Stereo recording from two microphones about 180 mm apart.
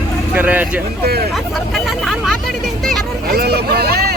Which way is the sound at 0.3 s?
10° right (ahead or behind).